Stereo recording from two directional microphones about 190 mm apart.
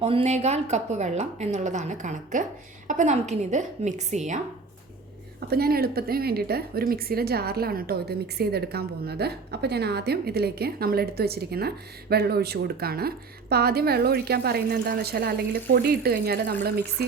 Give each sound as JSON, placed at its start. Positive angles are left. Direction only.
{"t": 0.0, "sound": "a woman's voice", "side_deg": -35}
{"t": 5.5, "sound": "a woman's voice", "side_deg": -55}